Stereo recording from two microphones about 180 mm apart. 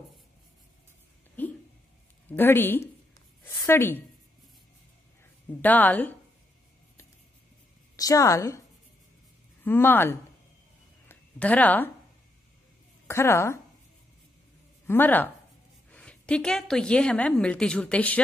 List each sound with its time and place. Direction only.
1.4 s a sound: 10° left (ahead or behind)
2.2 s a woman's voice: 10° left (ahead or behind)
5.5 s a woman's voice: 10° left (ahead or behind)
7.9 s a woman's voice: 20° left (ahead or behind)
9.7 s a woman's voice: 10° left (ahead or behind)
11.1 s a sound: 10° left (ahead or behind)
13.0 s a woman's voice: 15° left (ahead or behind)
14.9 s a woman's voice: 10° left (ahead or behind)